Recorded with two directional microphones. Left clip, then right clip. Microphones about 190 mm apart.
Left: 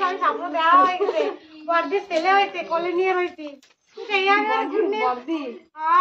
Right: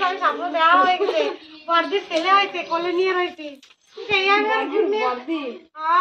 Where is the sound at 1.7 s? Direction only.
5° left (ahead or behind).